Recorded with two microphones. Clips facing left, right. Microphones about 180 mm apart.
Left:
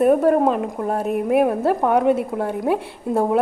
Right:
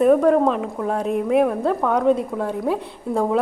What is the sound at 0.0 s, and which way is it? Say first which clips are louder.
A woman's voice: even; 5° left (ahead or behind).